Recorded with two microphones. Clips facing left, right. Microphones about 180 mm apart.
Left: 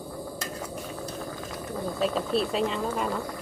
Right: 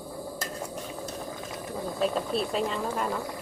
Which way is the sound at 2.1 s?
Centre (ahead or behind).